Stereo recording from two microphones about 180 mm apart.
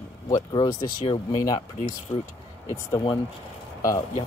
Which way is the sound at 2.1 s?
15° left (ahead or behind).